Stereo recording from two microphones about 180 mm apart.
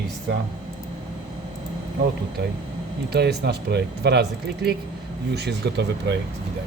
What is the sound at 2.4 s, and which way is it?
Speech, 70° right (ahead or behind).